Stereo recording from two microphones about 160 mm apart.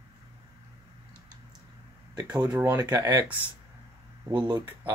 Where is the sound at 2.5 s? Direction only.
20° right (ahead or behind).